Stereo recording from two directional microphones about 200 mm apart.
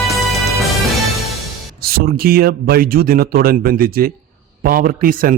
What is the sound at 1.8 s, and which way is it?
Speech, 50° right (ahead or behind).